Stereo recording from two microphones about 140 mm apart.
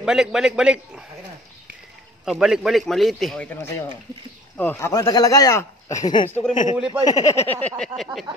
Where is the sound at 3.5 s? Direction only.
20° left (ahead or behind).